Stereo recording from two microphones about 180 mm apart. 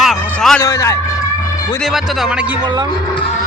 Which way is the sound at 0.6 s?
15° left (ahead or behind).